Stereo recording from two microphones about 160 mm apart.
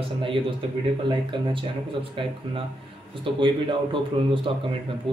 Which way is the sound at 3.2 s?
30° right (ahead or behind).